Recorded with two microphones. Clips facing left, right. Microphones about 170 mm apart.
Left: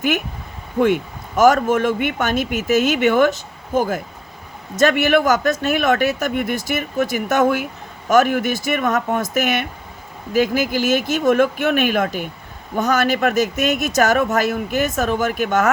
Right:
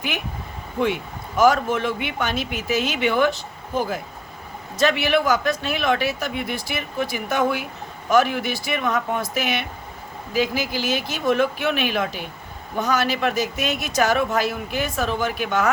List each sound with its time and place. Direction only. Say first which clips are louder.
1.4 s speech: left 4 dB; 45° left (ahead or behind)